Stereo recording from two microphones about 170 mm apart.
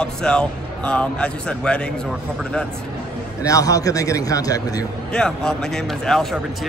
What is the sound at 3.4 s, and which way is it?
A man's voice, 20° left (ahead or behind).